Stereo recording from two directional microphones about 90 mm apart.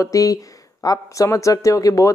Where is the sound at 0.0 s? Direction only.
40° left (ahead or behind).